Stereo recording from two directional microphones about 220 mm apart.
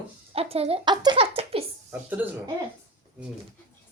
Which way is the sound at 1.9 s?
10° right (ahead or behind).